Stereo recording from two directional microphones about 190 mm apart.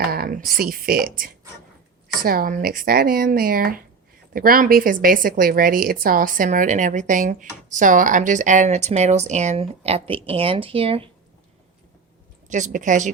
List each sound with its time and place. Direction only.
0.1 s a woman's voice: 50° right (ahead or behind); by 11.1 s 30° right (ahead or behind)
12.5 s a woman's voice: 40° right (ahead or behind)